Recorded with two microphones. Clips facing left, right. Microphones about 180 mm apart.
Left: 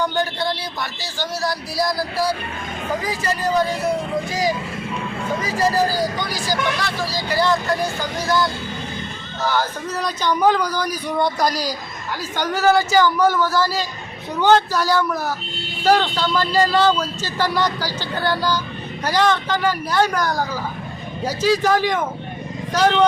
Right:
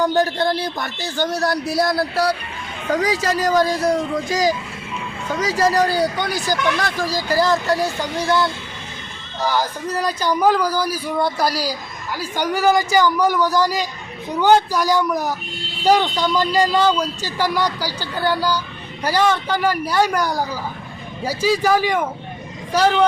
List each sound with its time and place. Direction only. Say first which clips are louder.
0.0 s speech: right 4 dB; 40° right (ahead or behind)
1.8 s music: right 1 dB; 60° right (ahead or behind)
2.9 s speech: right 5 dB; 85° right; by 6.3 s 65° right (ahead or behind)
7.3 s speech: right 1 dB; 40° right (ahead or behind)
9.4 s speech: right 1 dB; 10° right (ahead or behind)